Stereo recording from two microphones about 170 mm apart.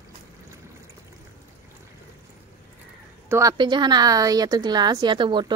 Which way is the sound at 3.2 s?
15° right (ahead or behind).